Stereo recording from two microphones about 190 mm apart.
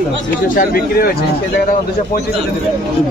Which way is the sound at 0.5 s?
50° left (ahead or behind).